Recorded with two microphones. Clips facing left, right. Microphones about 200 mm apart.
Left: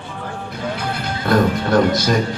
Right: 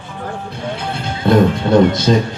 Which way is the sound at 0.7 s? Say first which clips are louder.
Right 2 dB; 25° right (ahead or behind).